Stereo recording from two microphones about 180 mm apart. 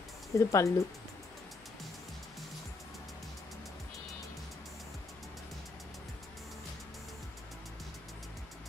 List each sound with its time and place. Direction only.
0.3 s speech: 15° left (ahead or behind)